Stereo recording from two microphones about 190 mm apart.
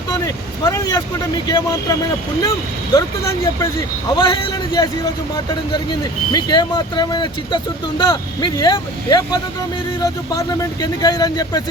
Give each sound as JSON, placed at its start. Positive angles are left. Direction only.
{"t": 0.1, "sound": "speech", "side_deg": 20}